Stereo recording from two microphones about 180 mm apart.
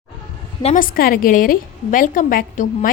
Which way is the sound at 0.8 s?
55° left (ahead or behind).